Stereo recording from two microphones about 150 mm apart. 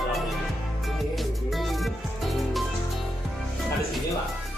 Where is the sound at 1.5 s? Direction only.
Centre (ahead or behind).